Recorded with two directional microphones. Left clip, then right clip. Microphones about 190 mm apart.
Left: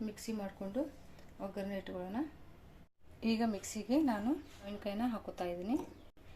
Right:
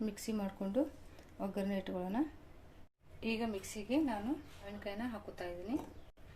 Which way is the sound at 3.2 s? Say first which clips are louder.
Left 2 dB; 15° left (ahead or behind).